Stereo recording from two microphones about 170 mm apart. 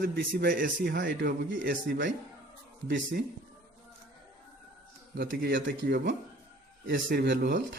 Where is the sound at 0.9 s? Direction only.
85° right.